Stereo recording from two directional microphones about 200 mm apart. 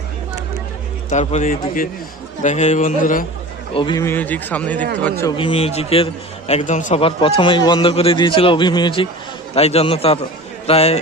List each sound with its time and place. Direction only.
1.1 s a man's voice: 35° left (ahead or behind)
3.8 s a man's voice: 25° left (ahead or behind)
4.0 s speech: 10° left (ahead or behind)
5.4 s a man's voice: 30° left (ahead or behind)